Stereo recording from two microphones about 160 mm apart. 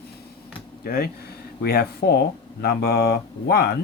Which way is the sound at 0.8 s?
70° left (ahead or behind).